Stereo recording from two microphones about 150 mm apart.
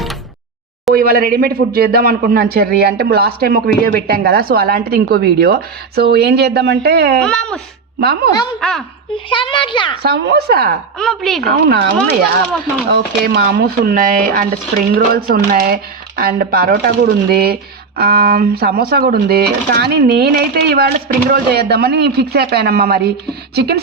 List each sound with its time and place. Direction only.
0.9 s speech: 85° right
7.2 s a woman's voice: 5° left (ahead or behind)
8.0 s speech: 90° right
8.6 s a woman's voice: centre (ahead or behind)
9.1 s a child's voice: 35° left (ahead or behind)
10.0 s speech: 90° right
10.9 s a woman's voice: 5° left (ahead or behind)
11.5 s speech: 90° right
12.9 s speech: 90° right